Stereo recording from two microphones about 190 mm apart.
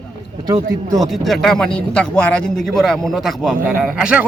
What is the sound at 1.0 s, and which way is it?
Speech, centre (ahead or behind).